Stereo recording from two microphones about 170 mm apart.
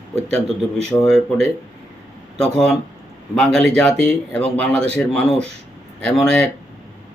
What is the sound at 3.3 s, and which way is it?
Speech, 5° left (ahead or behind).